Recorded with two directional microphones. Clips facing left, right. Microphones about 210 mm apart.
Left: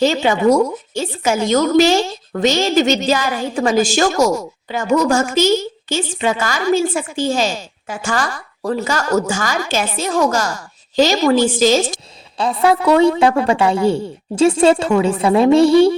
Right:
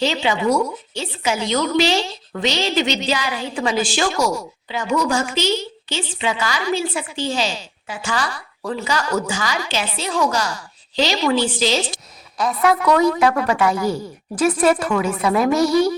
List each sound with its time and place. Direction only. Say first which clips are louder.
0.0 s a woman's voice: left 6 dB; 45° left (ahead or behind)
12.4 s a woman's voice: left 3 dB; 30° left (ahead or behind)